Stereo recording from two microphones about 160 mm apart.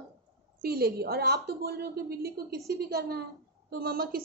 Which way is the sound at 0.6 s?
70° right (ahead or behind).